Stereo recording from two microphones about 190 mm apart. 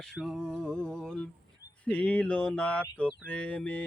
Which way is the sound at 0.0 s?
Centre (ahead or behind).